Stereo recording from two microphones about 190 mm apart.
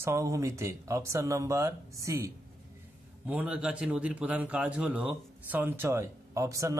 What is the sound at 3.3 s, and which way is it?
Speech, 5° right (ahead or behind).